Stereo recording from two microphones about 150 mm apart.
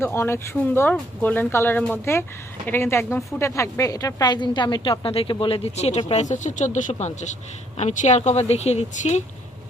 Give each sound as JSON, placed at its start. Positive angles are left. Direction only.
{"t": 0.0, "sound": "a woman's voice", "side_deg": 15}